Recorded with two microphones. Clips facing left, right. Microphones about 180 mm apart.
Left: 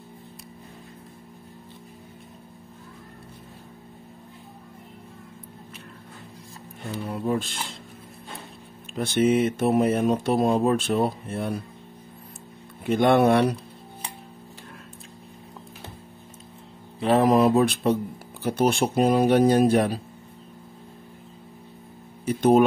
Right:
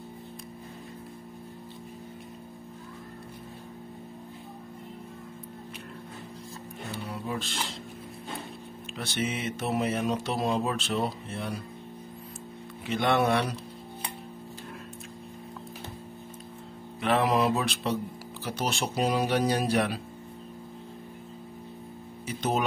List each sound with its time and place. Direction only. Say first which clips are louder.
7.1 s speech: left 10 dB; 50° left (ahead or behind)
8.9 s mantra: left 11 dB; 50° left (ahead or behind)
12.8 s mantra: left 7 dB; 50° left (ahead or behind)
17.0 s mantra: left 6 dB; 40° left (ahead or behind)
22.2 s speech: left 11 dB; 55° left (ahead or behind)